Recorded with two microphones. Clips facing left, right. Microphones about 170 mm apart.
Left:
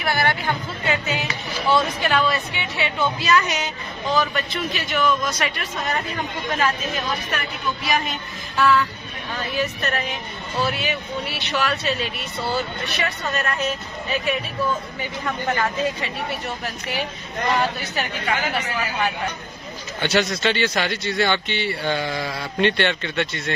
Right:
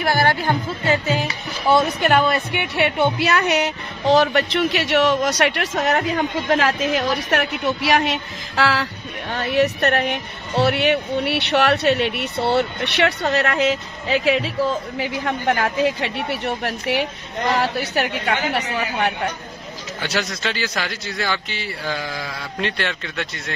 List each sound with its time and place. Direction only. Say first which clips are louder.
0.0 s music: right 4 dB; 40° right (ahead or behind)
2.0 s a woman's voice: right 4 dB; 50° right (ahead or behind); by 8.8 s 90° right
9.3 s a woman's voice: right 7 dB; 65° right (ahead or behind); by 14.5 s 90° right
15.2 s a man's voice: right 2 dB; 60° right (ahead or behind)
20.0 s speech: left 4 dB; centre (ahead or behind)